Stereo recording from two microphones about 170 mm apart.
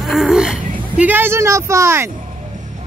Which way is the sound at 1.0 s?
10° right (ahead or behind).